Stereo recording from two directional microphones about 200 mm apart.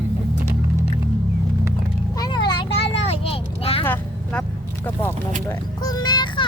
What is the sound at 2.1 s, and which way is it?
Vehicle, 20° left (ahead or behind).